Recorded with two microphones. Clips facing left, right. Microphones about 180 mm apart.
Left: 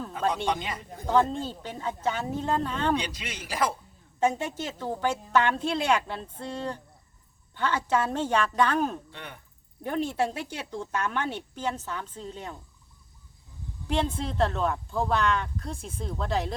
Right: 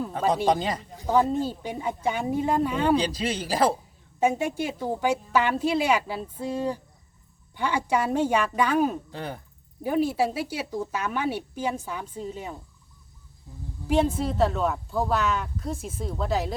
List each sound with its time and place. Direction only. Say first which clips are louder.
0.4 s speech: right 6 dB; 35° right (ahead or behind)
1.0 s speech: right 2 dB; 10° right (ahead or behind)
2.9 s speech: right 6 dB; 35° right (ahead or behind)
4.2 s speech: right 3 dB; 10° right (ahead or behind)
9.1 s speech: right 9 dB; 35° right (ahead or behind)
9.8 s speech: right 4 dB; 5° right (ahead or behind)
13.8 s speech: right 5 dB; 5° right (ahead or behind)